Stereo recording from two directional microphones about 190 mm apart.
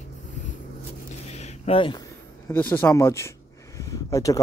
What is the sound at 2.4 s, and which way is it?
Speech, 10° left (ahead or behind).